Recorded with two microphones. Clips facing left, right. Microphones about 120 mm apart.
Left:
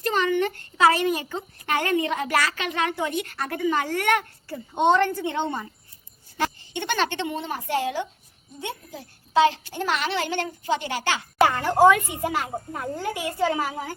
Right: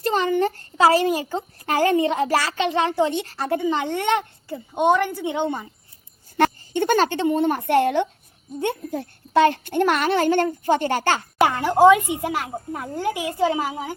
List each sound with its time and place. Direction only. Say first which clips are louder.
0.0 s a child's voice: right 3 dB; 30° right (ahead or behind)
4.7 s speech: right 1 dB; 10° right (ahead or behind)
6.7 s a child's voice: right 6 dB; 40° right (ahead or behind)
11.4 s speech: right 3 dB; 10° right (ahead or behind)